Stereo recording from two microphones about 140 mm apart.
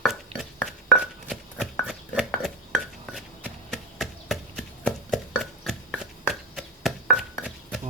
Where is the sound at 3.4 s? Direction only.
Centre (ahead or behind).